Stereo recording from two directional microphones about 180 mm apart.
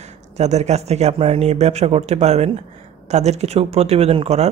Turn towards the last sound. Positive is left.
turn(degrees=-35)  # may be behind; listen again after turning